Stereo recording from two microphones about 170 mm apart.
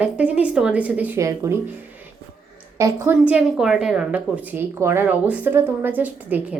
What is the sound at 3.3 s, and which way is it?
A woman's voice, 5° right (ahead or behind).